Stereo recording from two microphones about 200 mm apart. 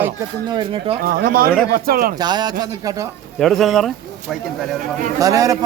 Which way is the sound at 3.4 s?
Centre (ahead or behind).